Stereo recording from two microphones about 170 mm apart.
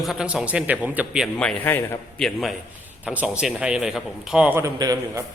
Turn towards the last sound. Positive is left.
turn(degrees=-20)  # may be behind; listen again after turning